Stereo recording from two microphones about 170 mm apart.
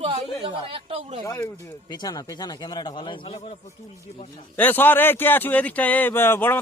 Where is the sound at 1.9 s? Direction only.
25° left (ahead or behind).